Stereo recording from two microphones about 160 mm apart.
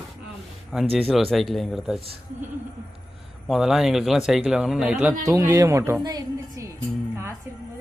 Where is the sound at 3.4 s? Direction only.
5° right (ahead or behind).